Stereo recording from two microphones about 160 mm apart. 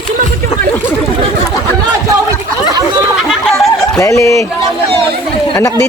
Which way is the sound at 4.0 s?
20° left (ahead or behind).